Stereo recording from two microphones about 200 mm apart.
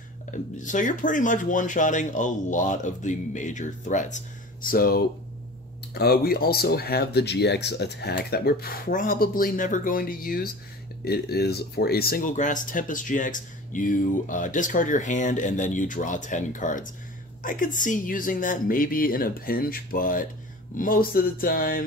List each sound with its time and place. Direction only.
0.3 s speech: 40° left (ahead or behind)